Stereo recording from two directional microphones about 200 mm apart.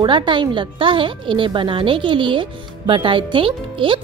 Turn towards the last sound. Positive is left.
turn(degrees=-25)  # may be behind; listen again after turning